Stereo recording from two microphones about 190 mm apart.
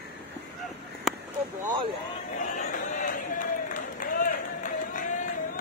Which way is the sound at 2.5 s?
45° left (ahead or behind).